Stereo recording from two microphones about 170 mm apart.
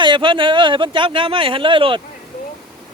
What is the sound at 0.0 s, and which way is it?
Speech, 30° right (ahead or behind).